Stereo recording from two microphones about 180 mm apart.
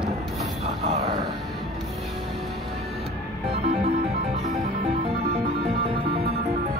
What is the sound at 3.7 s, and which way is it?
Music, 35° right (ahead or behind).